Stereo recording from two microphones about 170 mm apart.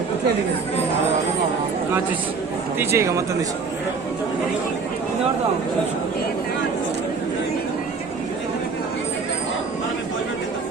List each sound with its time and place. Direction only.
2.7 s speech: 15° right (ahead or behind)